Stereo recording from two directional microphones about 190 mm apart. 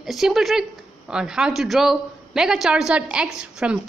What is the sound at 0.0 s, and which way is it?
A woman's voice, centre (ahead or behind).